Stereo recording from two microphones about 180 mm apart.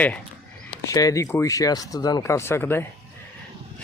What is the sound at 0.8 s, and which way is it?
Speech, 20° left (ahead or behind).